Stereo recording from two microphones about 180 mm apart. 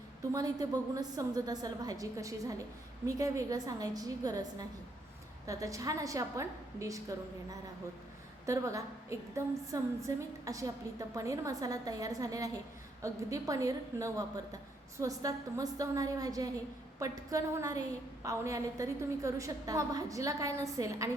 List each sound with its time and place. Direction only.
0.3 s a woman's voice: 20° right (ahead or behind)
5.5 s a woman's voice: 20° right (ahead or behind)
8.4 s a woman's voice: 15° right (ahead or behind)